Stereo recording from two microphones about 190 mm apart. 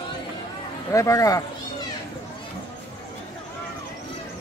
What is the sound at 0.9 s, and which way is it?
Speech, 15° left (ahead or behind).